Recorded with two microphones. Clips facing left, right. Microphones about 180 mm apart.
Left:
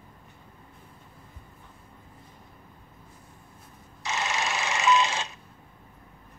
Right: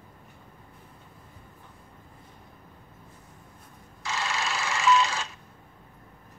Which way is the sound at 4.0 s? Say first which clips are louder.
Left 1 dB; 20° left (ahead or behind).